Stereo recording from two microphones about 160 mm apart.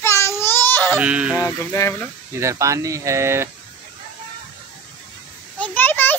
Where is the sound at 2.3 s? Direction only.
20° right (ahead or behind).